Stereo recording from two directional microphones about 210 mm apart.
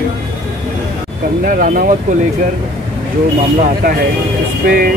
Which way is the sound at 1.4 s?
40° right (ahead or behind).